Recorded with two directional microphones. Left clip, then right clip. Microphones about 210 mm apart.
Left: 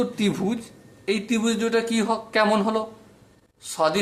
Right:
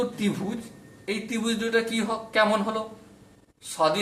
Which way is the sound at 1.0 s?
40° left (ahead or behind).